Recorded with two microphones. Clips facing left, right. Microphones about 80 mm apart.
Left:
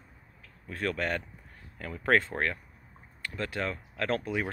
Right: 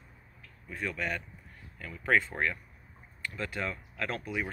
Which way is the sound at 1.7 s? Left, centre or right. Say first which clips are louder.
Left 2 dB; left.